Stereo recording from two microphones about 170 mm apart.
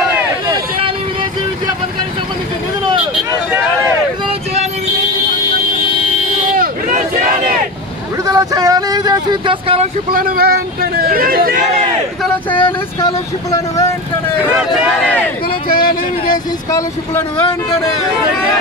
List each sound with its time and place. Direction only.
6.5 s a sound: 50° right (ahead or behind)
8.3 s vehicle: 20° right (ahead or behind)
10.1 s speech: 60° right (ahead or behind)
12.4 s speech: 30° left (ahead or behind)
13.0 s speech: 20° left (ahead or behind)
14.6 s speech: 5° right (ahead or behind)
15.7 s speech: 60° left (ahead or behind)
16.7 s speech: 20° left (ahead or behind)